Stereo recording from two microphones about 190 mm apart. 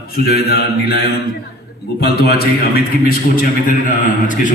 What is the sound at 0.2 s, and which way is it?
Mantra, 55° left (ahead or behind).